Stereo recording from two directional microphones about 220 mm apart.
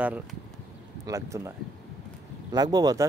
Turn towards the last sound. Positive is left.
turn(degrees=-15)  # may be behind; listen again after turning